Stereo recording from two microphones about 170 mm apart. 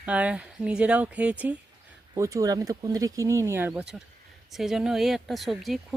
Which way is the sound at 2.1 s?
20° right (ahead or behind).